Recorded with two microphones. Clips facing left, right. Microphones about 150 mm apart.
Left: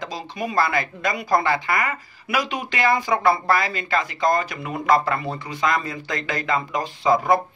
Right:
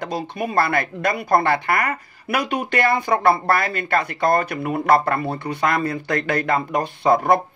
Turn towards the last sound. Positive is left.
turn(degrees=-60)  # may be behind; listen again after turning